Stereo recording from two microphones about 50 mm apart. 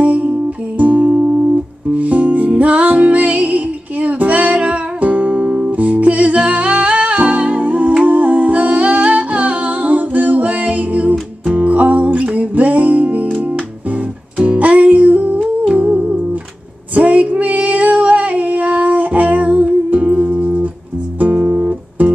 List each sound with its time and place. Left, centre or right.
0.0 s music: right
8.1 s humming: right
11.4 s music: right
14.4 s music: right
16.9 s female singing: right
21.2 s guitar: right